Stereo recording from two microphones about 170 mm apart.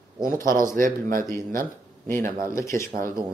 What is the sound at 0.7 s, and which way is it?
Speech, 55° right (ahead or behind).